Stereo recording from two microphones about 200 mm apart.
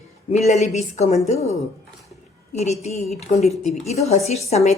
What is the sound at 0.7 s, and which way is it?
A woman's voice, 35° left (ahead or behind).